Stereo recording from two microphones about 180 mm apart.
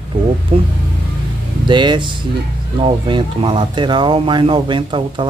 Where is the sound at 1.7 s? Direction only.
25° right (ahead or behind).